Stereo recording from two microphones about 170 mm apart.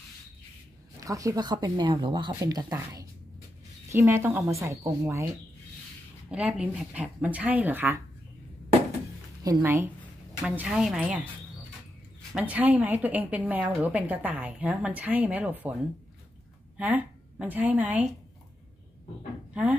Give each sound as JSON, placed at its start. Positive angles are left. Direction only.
{"t": 1.0, "sound": "a woman's voice", "side_deg": -20}
{"t": 6.3, "sound": "a woman's voice", "side_deg": -5}
{"t": 9.4, "sound": "a woman's voice", "side_deg": -15}
{"t": 12.4, "sound": "a woman's voice", "side_deg": -10}
{"t": 16.7, "sound": "a woman's voice", "side_deg": -5}